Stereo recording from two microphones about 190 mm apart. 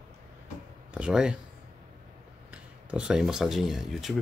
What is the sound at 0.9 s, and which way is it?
Speech, 5° right (ahead or behind).